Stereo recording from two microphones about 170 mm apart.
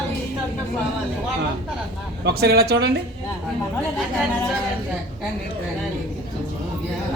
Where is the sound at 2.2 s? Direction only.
70° right (ahead or behind).